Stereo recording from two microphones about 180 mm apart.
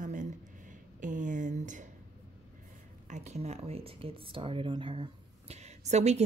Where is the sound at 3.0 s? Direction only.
40° right (ahead or behind).